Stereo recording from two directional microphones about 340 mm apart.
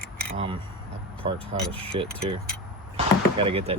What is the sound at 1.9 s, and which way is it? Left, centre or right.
Speech, centre.